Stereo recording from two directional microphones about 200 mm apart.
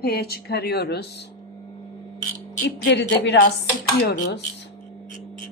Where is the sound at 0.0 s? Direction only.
50° left (ahead or behind).